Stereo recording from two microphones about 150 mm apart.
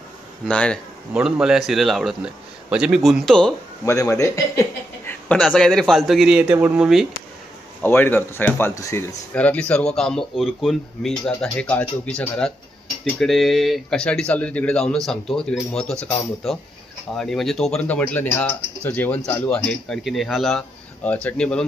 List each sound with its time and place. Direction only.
0.5 s speech: 5° left (ahead or behind)
1.1 s speech: 5° right (ahead or behind)
3.8 s speech: 20° left (ahead or behind)
5.3 s speech: 5° left (ahead or behind)
7.8 s speech: 15° left (ahead or behind)